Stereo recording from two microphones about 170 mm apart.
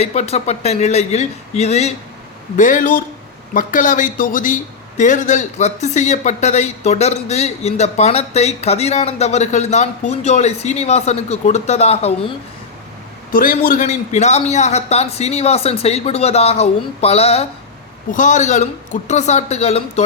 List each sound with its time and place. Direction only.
0.0 s speech: 40° left (ahead or behind)
2.6 s speech: 50° left (ahead or behind)
13.3 s speech: 55° left (ahead or behind); by 17.5 s 35° left (ahead or behind)
18.1 s speech: 45° left (ahead or behind)